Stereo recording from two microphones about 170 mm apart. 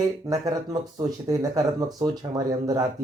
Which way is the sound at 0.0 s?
20° right (ahead or behind).